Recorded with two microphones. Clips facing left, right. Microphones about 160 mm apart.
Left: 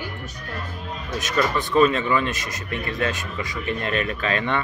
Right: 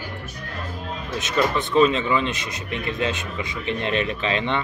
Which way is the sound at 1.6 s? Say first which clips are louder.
Even; 20° right (ahead or behind).